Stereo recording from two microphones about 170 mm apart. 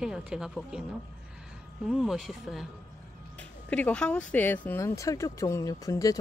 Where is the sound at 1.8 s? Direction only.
Centre (ahead or behind).